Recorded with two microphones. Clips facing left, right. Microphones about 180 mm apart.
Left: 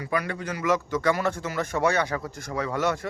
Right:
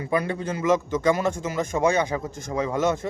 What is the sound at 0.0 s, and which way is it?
A man's voice, 25° right (ahead or behind).